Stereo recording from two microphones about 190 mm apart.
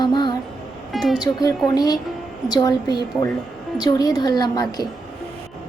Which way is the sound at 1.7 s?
20° left (ahead or behind).